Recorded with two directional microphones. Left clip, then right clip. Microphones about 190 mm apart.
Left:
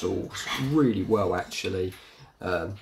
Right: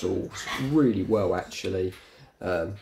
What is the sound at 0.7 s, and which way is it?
Speech, 10° left (ahead or behind).